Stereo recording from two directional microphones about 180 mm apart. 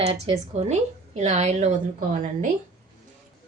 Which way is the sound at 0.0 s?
35° right (ahead or behind).